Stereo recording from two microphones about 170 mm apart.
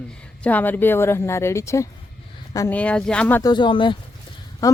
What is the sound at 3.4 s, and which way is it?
A woman's voice, 25° left (ahead or behind).